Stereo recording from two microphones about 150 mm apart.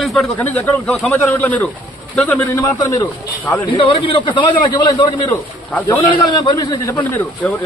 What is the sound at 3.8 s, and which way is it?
A man's voice, 35° left (ahead or behind).